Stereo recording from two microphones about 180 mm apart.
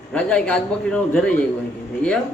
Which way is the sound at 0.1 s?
5° left (ahead or behind).